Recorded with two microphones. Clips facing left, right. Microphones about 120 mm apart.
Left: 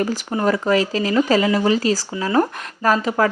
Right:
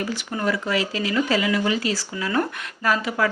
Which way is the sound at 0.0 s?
40° left (ahead or behind).